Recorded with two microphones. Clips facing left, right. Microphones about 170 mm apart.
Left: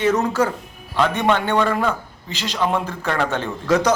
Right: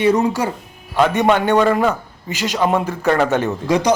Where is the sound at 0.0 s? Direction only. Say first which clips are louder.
Right 2 dB; 10° right (ahead or behind).